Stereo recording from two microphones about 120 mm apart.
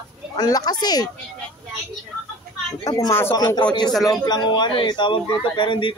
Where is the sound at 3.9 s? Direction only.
Centre (ahead or behind).